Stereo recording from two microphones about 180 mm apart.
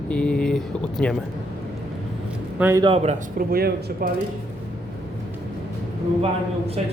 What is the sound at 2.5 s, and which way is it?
Speech, 10° right (ahead or behind).